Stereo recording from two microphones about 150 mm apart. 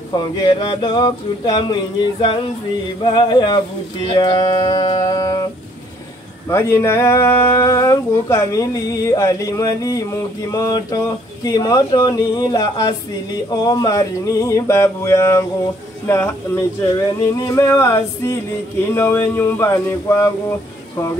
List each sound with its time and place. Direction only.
0.1 s a sound: 30° left (ahead or behind)
3.1 s speech: 30° left (ahead or behind)
6.5 s speech: 15° left (ahead or behind)